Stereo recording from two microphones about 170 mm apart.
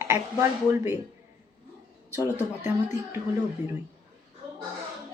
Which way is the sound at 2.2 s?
15° right (ahead or behind).